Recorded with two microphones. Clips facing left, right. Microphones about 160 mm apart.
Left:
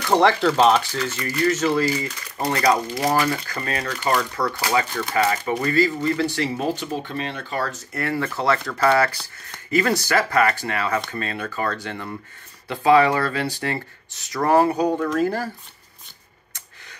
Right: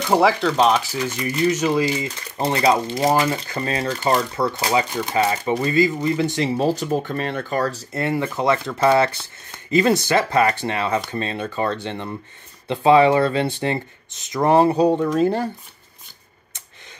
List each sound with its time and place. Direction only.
0.0 s speech: 5° right (ahead or behind)
0.9 s speech: 15° right (ahead or behind)
6.6 s speech: 40° right (ahead or behind)
7.9 s speech: 20° right (ahead or behind)